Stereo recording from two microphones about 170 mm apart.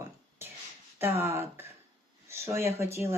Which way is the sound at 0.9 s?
15° right (ahead or behind).